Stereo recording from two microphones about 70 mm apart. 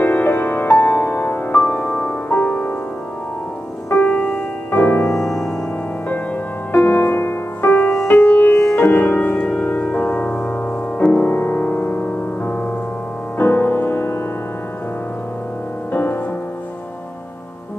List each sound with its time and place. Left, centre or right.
0.0 s music: left
3.9 s music: left
5.1 s music: centre
6.7 s music: left
15.9 s music: left